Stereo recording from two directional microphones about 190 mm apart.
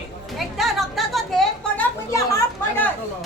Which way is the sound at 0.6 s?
Centre (ahead or behind).